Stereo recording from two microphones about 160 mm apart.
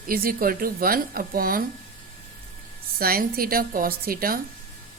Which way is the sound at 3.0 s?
70° right (ahead or behind).